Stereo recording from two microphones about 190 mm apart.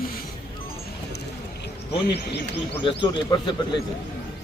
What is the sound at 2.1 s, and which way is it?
Speech, 60° left (ahead or behind).